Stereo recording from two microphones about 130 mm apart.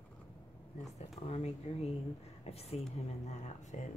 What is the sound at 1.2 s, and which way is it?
Speech, 55° left (ahead or behind).